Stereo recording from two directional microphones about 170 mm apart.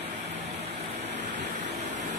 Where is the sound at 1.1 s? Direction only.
90° right.